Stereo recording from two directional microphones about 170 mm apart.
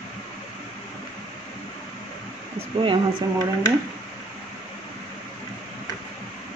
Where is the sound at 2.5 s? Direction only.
30° right (ahead or behind).